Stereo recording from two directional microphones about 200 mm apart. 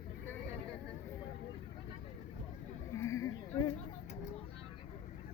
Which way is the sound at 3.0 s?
15° left (ahead or behind).